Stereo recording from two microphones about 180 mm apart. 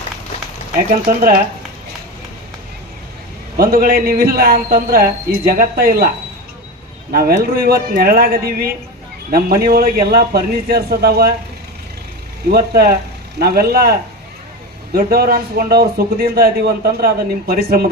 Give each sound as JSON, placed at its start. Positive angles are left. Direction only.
{"t": 0.9, "sound": "speech", "side_deg": -55}
{"t": 3.6, "sound": "a man's voice", "side_deg": -55}
{"t": 7.1, "sound": "a man's voice", "side_deg": -55}
{"t": 12.5, "sound": "a man's voice", "side_deg": -60}
{"t": 14.9, "sound": "a man's voice", "side_deg": -55}